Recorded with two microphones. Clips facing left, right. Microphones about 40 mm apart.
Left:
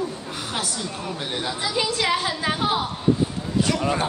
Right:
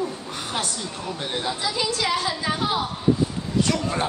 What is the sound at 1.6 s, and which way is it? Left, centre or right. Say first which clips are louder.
Speech: left 3 dB; left.